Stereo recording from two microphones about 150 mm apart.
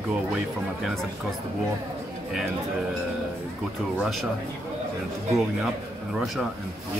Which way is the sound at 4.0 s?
Centre (ahead or behind).